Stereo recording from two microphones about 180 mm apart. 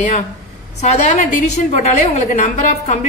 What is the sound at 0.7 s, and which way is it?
A woman's voice, 40° left (ahead or behind).